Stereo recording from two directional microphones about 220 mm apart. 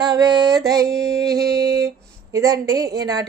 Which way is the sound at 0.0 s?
20° right (ahead or behind).